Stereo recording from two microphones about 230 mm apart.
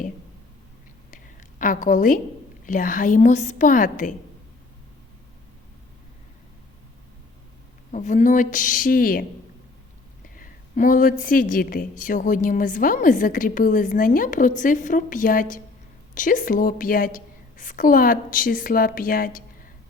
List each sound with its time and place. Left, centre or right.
1.1 s a sound: left
2.6 s a woman's voice: left
7.9 s a woman's voice: left
10.3 s a woman's voice: left